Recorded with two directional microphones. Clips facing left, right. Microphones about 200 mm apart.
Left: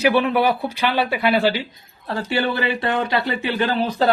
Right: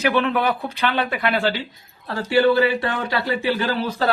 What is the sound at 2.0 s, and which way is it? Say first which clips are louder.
Speech: right 5 dB; 20° left (ahead or behind).